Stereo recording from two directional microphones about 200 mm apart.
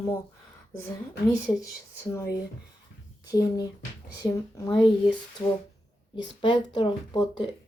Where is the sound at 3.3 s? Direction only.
15° left (ahead or behind).